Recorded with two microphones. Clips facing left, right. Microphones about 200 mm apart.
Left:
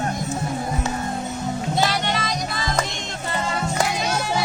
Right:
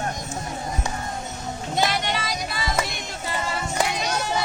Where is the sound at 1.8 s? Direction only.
10° right (ahead or behind).